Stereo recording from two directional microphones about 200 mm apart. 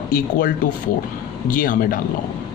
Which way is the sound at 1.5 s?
45° left (ahead or behind).